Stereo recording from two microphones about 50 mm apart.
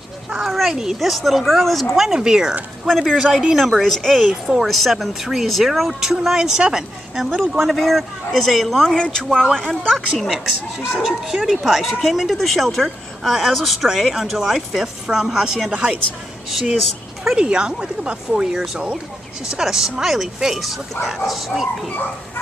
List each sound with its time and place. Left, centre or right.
0.3 s speech: centre
2.0 s speech: centre
2.9 s speech: centre
7.2 s speech: centre
8.9 s speech: centre
15.7 s speech: right
16.4 s speech: centre
17.4 s speech: centre